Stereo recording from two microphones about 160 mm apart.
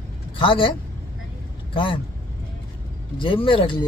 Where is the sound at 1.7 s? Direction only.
35° left (ahead or behind).